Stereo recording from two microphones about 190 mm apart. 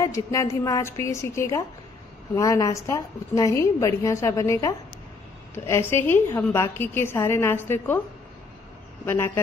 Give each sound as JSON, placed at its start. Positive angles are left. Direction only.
{"t": 0.0, "sound": "a woman's voice", "side_deg": 15}
{"t": 9.0, "sound": "a woman's voice", "side_deg": 10}